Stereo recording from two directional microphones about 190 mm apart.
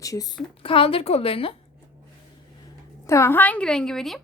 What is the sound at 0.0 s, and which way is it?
A woman's voice, 20° left (ahead or behind).